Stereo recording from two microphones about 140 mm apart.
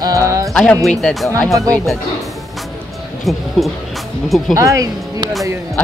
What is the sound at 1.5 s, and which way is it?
Speech, 25° right (ahead or behind).